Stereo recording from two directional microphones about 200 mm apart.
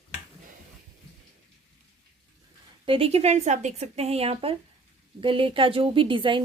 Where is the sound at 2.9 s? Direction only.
30° right (ahead or behind).